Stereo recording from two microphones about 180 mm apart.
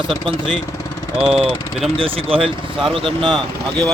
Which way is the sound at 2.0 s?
30° right (ahead or behind).